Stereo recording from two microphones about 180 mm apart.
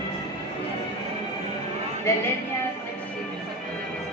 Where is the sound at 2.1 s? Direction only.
15° left (ahead or behind).